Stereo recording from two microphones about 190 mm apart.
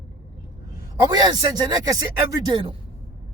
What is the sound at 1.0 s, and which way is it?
Speech, 20° right (ahead or behind).